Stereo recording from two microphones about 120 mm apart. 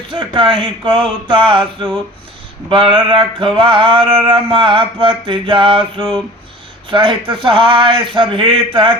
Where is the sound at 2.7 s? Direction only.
45° right (ahead or behind).